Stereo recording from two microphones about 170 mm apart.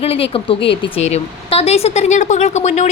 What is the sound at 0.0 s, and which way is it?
Speech, 35° left (ahead or behind).